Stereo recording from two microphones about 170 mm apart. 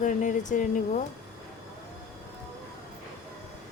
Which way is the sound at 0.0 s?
50° left (ahead or behind).